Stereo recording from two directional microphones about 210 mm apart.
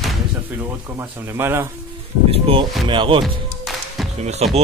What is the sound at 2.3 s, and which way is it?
Speech, 25° right (ahead or behind).